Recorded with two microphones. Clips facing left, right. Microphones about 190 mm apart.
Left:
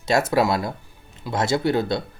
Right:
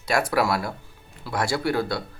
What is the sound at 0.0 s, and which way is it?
Speech, 25° left (ahead or behind).